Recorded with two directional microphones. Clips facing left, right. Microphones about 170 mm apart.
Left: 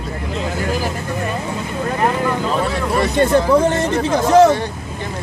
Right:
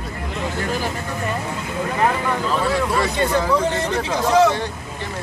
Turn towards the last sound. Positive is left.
turn(degrees=50)  # may be behind; listen again after turning